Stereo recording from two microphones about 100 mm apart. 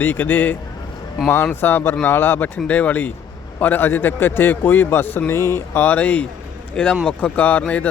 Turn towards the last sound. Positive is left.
turn(degrees=15)  # may be behind; listen again after turning